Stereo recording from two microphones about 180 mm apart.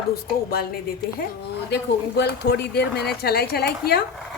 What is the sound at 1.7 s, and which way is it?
Speech, 70° left (ahead or behind).